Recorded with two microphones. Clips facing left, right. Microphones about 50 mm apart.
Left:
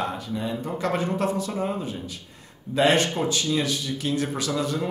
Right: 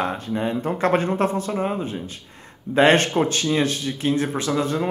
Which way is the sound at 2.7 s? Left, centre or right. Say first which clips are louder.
Right 4 dB; right.